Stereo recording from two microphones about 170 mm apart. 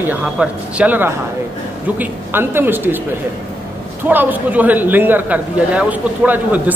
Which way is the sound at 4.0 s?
10° right (ahead or behind).